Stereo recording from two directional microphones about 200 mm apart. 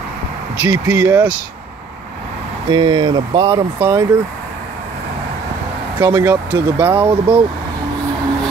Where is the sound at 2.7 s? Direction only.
20° right (ahead or behind).